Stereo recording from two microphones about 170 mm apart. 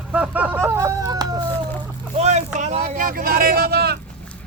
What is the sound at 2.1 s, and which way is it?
Speech, 40° right (ahead or behind).